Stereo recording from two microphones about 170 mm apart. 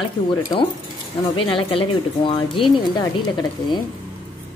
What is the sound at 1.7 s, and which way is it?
A woman's voice, 30° left (ahead or behind).